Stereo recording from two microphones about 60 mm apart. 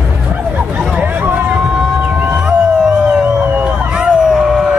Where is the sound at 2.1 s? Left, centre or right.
Right.